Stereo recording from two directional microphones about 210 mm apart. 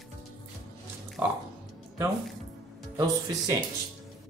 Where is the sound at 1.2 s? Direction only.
10° right (ahead or behind).